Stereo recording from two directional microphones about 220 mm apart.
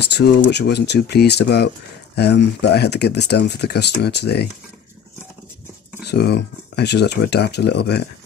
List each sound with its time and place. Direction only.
0.0 s speech: 50° left (ahead or behind)
6.0 s speech: 50° left (ahead or behind)